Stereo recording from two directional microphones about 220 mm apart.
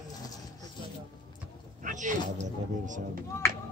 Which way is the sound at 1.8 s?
35° right (ahead or behind).